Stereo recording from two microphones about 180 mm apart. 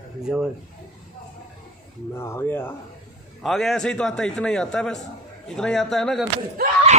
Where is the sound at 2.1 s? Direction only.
15° left (ahead or behind).